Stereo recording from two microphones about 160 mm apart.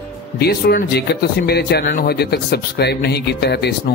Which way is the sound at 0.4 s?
80° left.